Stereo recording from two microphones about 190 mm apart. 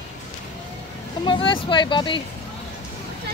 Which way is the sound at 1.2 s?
25° left (ahead or behind).